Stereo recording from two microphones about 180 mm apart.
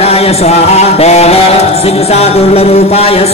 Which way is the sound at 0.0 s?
35° left (ahead or behind).